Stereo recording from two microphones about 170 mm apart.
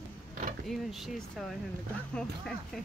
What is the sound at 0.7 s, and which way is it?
Speech, centre (ahead or behind).